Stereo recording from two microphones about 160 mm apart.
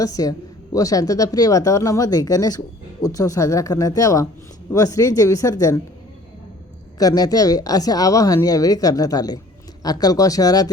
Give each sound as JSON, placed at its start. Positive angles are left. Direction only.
{"t": 0.0, "sound": "speech", "side_deg": 20}
{"t": 7.0, "sound": "speech", "side_deg": 25}